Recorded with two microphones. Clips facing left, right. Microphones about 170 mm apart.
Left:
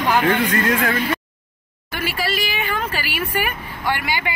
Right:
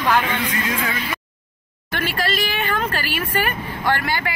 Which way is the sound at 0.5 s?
60° left (ahead or behind).